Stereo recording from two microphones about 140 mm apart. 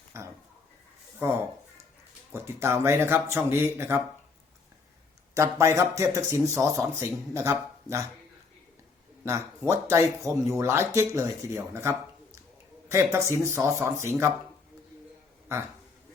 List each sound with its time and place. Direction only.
0.1 s speech: 20° right (ahead or behind)
5.3 s speech: 20° right (ahead or behind)
9.6 s speech: 20° right (ahead or behind)